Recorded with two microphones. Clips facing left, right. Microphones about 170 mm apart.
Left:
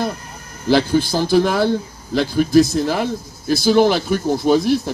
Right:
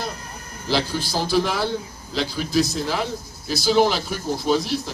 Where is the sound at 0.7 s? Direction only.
55° left (ahead or behind).